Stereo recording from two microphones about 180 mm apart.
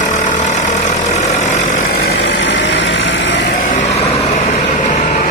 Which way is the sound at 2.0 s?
70° left (ahead or behind).